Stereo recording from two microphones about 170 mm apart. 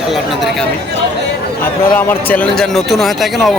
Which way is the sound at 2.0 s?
10° left (ahead or behind).